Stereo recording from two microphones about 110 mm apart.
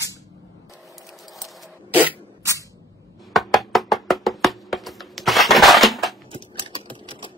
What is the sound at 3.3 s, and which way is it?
Music, centre (ahead or behind).